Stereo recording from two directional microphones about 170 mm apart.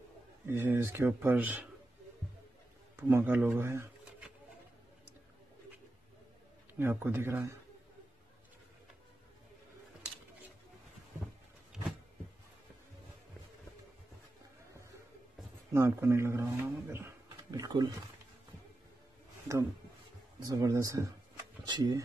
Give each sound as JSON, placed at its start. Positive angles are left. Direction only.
{"t": 0.5, "sound": "speech", "side_deg": -15}
{"t": 3.1, "sound": "speech", "side_deg": -10}
{"t": 6.7, "sound": "speech", "side_deg": -15}
{"t": 11.7, "sound": "a sound", "side_deg": -5}
{"t": 15.7, "sound": "speech", "side_deg": -15}
{"t": 20.4, "sound": "speech", "side_deg": -20}